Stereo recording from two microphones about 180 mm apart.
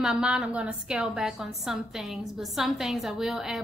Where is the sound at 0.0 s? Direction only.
5° right (ahead or behind).